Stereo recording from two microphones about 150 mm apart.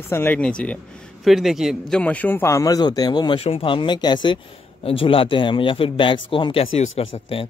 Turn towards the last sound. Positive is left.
turn(degrees=40)  # may be behind; listen again after turning